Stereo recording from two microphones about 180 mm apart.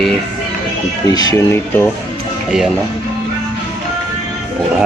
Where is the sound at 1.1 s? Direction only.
20° left (ahead or behind).